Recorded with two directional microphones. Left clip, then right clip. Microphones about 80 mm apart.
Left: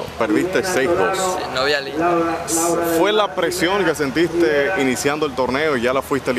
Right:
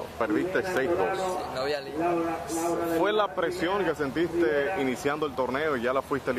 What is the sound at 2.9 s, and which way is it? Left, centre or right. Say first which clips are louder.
Speech: left 7 dB; left.